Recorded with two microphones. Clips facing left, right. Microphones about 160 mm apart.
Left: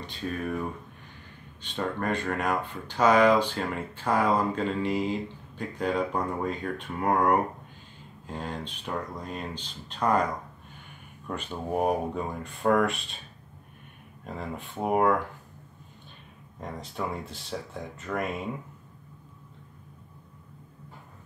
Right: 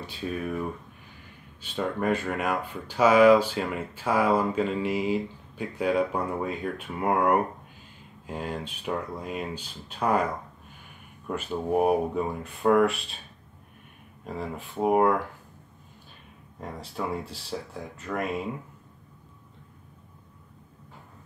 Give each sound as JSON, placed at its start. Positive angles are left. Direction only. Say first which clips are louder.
{"t": 0.0, "sound": "speech", "louder": "right 1 dB", "side_deg": -5}
{"t": 11.2, "sound": "speech", "louder": "right 4 dB", "side_deg": -5}
{"t": 14.2, "sound": "speech", "louder": "right 2 dB", "side_deg": 0}
{"t": 16.8, "sound": "speech", "louder": "right 3 dB", "side_deg": 0}